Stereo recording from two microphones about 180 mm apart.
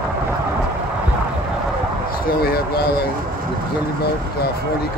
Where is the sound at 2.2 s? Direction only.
55° left (ahead or behind).